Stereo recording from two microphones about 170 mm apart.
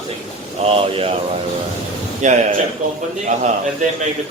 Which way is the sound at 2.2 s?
45° right (ahead or behind).